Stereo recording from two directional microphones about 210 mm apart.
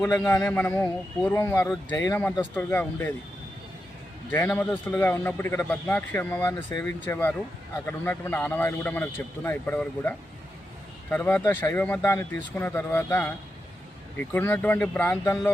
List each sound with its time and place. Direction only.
0.3 s a man's voice: 10° left (ahead or behind)
4.3 s a man's voice: 10° left (ahead or behind)